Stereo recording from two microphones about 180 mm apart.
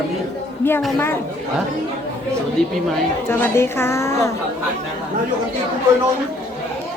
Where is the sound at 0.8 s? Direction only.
Centre (ahead or behind).